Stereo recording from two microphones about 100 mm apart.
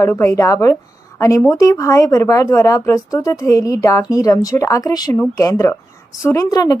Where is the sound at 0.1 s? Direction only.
20° left (ahead or behind).